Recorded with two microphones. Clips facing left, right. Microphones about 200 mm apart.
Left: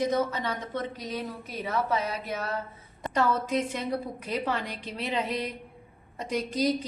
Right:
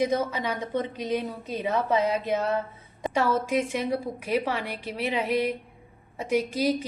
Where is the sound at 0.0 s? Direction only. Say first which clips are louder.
Right 1 dB; 10° right (ahead or behind).